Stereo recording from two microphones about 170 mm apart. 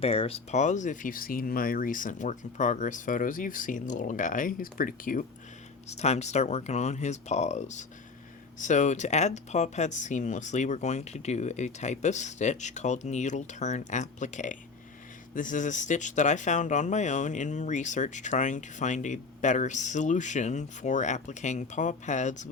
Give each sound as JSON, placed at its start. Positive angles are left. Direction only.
{"t": 0.0, "sound": "speech", "side_deg": 35}
{"t": 5.9, "sound": "speech", "side_deg": 40}